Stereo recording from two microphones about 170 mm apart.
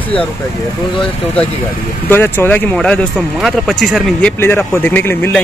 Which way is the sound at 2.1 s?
10° left (ahead or behind).